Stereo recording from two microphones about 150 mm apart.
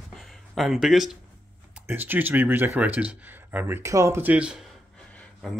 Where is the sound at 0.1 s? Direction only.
Centre (ahead or behind).